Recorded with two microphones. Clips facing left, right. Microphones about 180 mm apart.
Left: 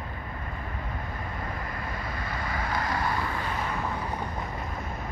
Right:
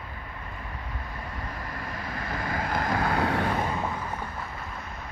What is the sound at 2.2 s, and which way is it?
Vehicle, 50° right (ahead or behind).